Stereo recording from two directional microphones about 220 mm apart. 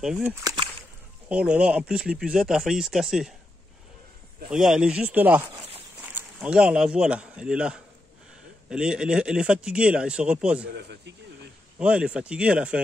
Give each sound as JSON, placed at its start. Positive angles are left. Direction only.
{"t": 0.0, "sound": "speech", "side_deg": -5}
{"t": 1.3, "sound": "a man's voice", "side_deg": -5}
{"t": 4.5, "sound": "a man's voice", "side_deg": -5}
{"t": 10.8, "sound": "speech", "side_deg": -50}
{"t": 11.8, "sound": "a man's voice", "side_deg": -5}